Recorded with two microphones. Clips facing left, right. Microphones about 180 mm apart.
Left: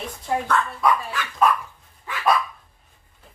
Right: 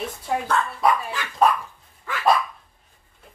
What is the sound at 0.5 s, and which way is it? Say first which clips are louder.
Dog: right 1 dB; 30° right (ahead or behind).